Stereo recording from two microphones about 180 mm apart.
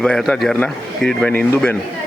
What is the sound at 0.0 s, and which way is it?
A man's voice, 5° left (ahead or behind).